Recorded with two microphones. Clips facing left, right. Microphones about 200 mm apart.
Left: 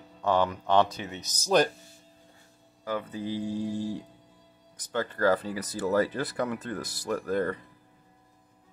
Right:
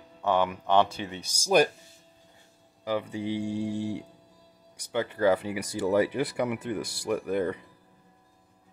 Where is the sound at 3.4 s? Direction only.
70° right (ahead or behind).